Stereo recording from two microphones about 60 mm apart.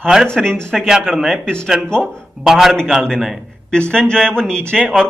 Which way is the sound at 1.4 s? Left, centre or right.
Centre.